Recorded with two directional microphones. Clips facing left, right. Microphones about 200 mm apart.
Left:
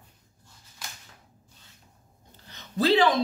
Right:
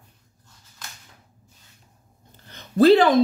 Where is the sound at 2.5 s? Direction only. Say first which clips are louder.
Right 9 dB; 50° right (ahead or behind).